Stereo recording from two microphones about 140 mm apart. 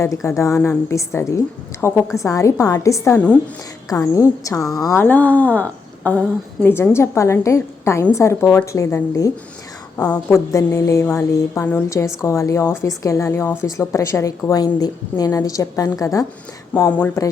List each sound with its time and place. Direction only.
0.0 s speech: 20° left (ahead or behind)
3.2 s speech: 10° left (ahead or behind)
3.8 s speech: 25° left (ahead or behind)